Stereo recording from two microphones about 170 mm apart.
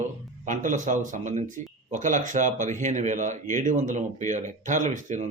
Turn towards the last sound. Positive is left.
turn(degrees=-45)  # may be behind; listen again after turning